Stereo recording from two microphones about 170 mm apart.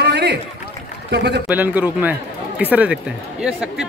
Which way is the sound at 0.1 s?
90° right.